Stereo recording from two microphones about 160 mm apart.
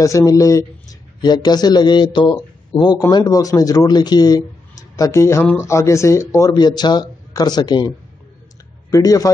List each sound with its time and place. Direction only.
0.0 s a man's voice: 20° left (ahead or behind)
8.9 s a man's voice: 20° left (ahead or behind)